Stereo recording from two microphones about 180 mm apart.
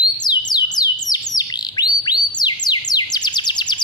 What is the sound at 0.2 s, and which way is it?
Bird, 25° left (ahead or behind).